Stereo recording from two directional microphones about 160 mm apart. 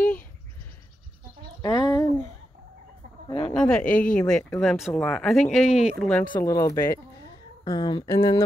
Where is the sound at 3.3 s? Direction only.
40° left (ahead or behind).